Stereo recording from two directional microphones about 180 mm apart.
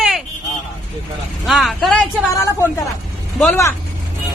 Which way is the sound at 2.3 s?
15° left (ahead or behind).